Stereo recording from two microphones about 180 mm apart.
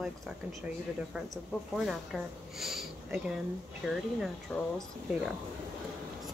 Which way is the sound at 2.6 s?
Centre (ahead or behind).